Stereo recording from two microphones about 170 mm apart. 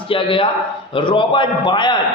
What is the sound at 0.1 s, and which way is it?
A man's voice, 30° left (ahead or behind).